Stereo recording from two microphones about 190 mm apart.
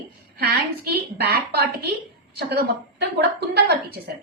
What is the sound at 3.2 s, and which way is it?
Speech, 60° right (ahead or behind).